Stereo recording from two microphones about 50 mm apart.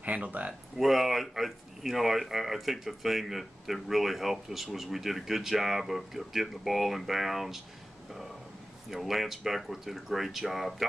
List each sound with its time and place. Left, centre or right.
0.0 s speech: right
0.7 s speech: centre
8.9 s speech: centre